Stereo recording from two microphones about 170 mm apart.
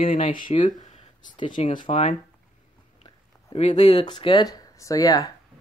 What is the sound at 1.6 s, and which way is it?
Speech, 50° left (ahead or behind).